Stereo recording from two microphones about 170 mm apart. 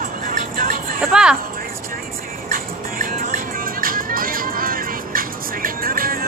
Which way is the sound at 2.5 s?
55° right (ahead or behind).